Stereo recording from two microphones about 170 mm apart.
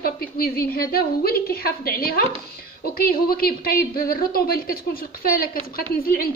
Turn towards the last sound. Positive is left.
turn(degrees=60)  # may be behind; listen again after turning